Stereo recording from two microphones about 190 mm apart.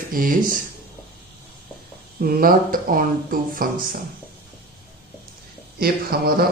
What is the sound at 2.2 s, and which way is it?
Speech, 50° right (ahead or behind).